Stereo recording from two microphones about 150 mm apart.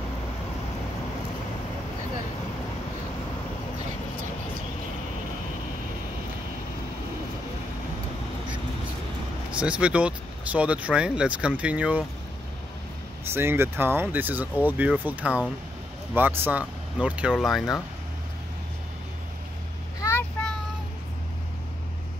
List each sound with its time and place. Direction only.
9.5 s speech: 10° right (ahead or behind)
13.3 s speech: 15° right (ahead or behind)
20.0 s vehicle: 15° left (ahead or behind)